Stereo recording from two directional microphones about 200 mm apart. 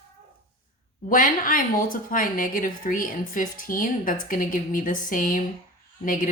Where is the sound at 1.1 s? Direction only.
45° left (ahead or behind).